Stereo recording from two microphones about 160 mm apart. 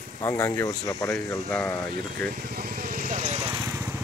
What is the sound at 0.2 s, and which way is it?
Speech, 15° left (ahead or behind).